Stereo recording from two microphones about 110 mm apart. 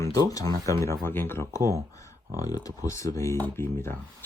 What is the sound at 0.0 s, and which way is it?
Speech, 35° left (ahead or behind).